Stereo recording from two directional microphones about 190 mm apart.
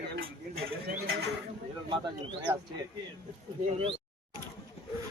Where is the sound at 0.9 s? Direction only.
60° right (ahead or behind).